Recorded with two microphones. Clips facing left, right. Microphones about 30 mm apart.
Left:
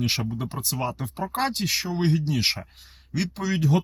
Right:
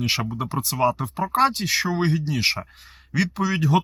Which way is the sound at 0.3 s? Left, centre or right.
Centre.